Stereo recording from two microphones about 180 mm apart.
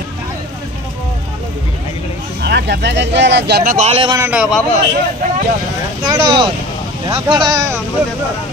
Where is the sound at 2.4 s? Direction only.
65° right (ahead or behind).